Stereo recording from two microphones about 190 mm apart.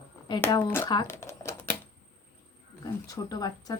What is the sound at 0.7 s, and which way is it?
Typewriter, 15° left (ahead or behind).